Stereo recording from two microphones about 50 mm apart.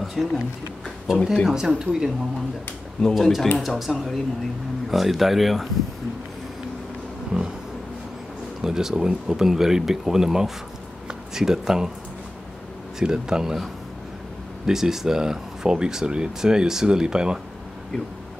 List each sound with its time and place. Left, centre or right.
0.0 s a sound: centre
1.1 s speech: centre
1.5 s speech: centre
3.2 s speech: centre
7.3 s a sound: right
8.6 s speech: centre
13.0 s speech: centre
14.7 s speech: centre